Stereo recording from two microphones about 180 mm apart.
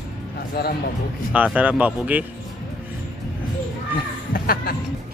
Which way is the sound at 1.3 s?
5° right (ahead or behind).